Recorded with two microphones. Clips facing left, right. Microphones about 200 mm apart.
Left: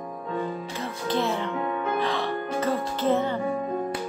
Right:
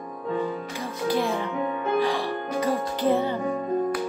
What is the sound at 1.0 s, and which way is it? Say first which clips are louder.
Music: right 2 dB; 10° right (ahead or behind).